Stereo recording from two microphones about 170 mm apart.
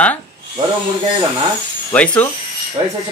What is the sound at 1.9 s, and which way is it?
Speech, 10° left (ahead or behind).